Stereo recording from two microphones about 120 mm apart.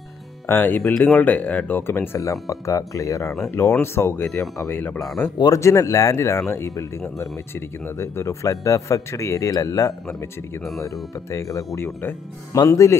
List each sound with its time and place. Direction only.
0.5 s speech: 15° left (ahead or behind)
4.9 s speech: centre (ahead or behind)
5.4 s speech: 25° left (ahead or behind)
11.3 s speech: 25° left (ahead or behind)